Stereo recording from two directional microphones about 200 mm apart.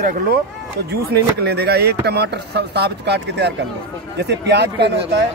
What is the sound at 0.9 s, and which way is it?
A man's voice, 55° right (ahead or behind).